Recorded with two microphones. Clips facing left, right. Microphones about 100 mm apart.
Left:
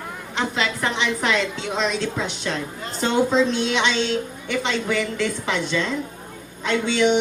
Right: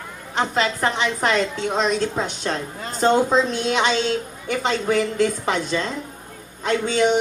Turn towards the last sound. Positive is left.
turn(degrees=-40)  # may be behind; listen again after turning